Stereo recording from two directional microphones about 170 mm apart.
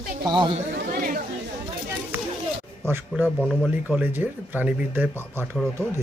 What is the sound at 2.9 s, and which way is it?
Speech, 10° right (ahead or behind).